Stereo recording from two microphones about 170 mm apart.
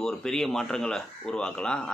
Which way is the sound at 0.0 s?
5° left (ahead or behind).